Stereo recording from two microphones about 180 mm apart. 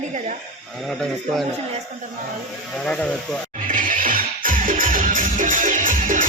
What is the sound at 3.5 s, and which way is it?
Music, 45° right (ahead or behind).